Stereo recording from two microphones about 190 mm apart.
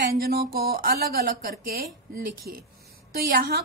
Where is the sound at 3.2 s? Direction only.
55° right (ahead or behind).